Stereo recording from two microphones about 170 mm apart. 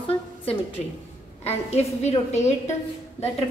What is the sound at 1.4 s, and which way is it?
A woman's voice, 40° left (ahead or behind).